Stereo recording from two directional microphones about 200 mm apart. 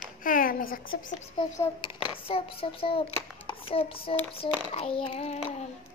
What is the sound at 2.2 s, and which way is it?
Speech, 30° left (ahead or behind).